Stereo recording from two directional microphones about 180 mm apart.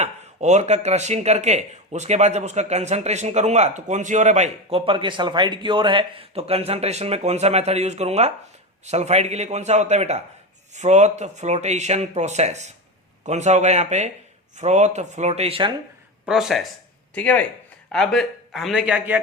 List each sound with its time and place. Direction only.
0.0 s speech: 40° right (ahead or behind)
16.2 s speech: centre (ahead or behind)